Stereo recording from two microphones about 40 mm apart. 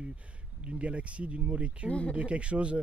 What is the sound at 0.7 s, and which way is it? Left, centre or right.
Speech, right.